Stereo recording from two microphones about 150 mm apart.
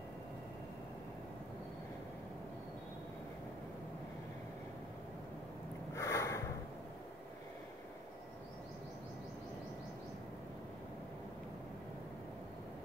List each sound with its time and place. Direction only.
5.9 s snort: 20° left (ahead or behind)